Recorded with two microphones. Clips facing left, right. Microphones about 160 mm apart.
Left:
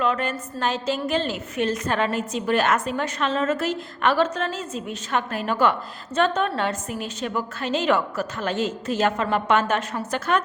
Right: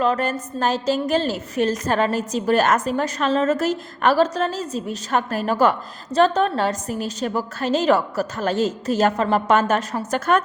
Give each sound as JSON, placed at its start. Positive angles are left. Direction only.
{"t": 0.0, "sound": "a woman's voice", "side_deg": -40}